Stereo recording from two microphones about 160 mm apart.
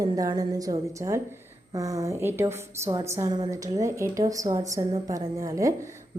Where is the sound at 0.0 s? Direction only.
20° right (ahead or behind).